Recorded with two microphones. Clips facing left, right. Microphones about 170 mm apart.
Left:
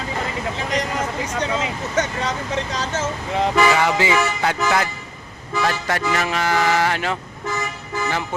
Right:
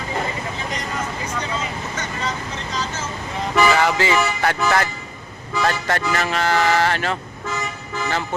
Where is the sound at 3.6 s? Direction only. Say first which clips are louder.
Even; 15° left (ahead or behind).